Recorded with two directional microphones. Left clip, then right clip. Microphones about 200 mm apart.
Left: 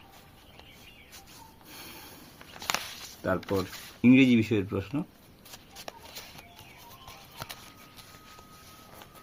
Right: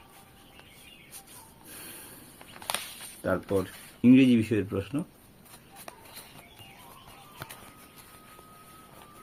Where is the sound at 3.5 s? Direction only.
15° left (ahead or behind).